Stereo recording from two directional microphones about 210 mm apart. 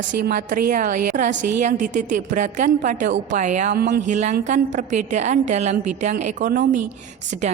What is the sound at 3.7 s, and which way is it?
Speech, 50° right (ahead or behind).